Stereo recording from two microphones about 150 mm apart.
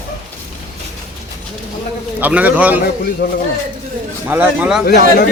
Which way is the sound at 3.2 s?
90° left.